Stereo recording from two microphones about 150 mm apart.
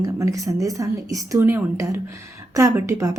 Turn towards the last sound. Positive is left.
turn(degrees=-20)  # may be behind; listen again after turning